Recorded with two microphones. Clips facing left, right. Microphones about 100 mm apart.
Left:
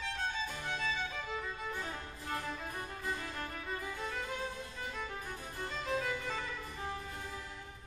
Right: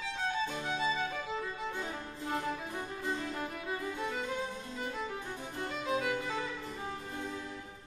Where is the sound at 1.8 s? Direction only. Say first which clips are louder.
Right 3 dB; 15° right (ahead or behind).